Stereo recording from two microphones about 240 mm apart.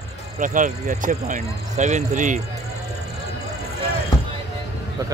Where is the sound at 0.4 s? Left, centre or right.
Right.